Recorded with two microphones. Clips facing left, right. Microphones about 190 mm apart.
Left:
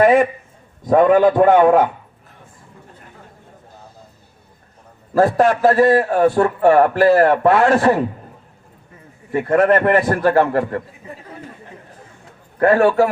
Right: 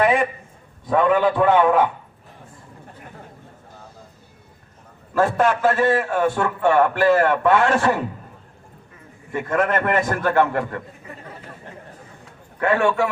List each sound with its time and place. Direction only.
0.9 s a man's voice: 45° left (ahead or behind)
5.1 s a man's voice: 35° left (ahead or behind)
9.3 s a man's voice: 35° left (ahead or behind)
12.5 s a man's voice: 35° left (ahead or behind)